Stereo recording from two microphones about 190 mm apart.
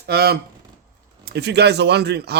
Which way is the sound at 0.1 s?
55° right (ahead or behind).